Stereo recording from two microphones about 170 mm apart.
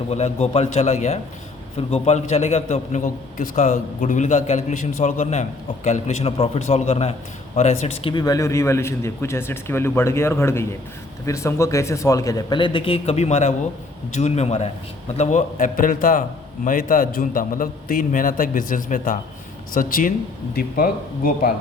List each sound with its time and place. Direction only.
0.1 s a man's voice: 40° left (ahead or behind)
8.1 s a man's voice: 20° left (ahead or behind); by 21.5 s 60° left (ahead or behind)